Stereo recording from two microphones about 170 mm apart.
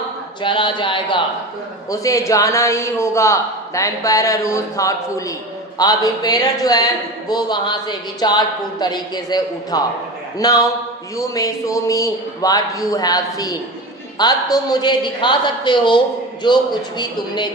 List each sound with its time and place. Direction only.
0.4 s a man's voice: 30° left (ahead or behind)
1.9 s a man's voice: 20° left (ahead or behind)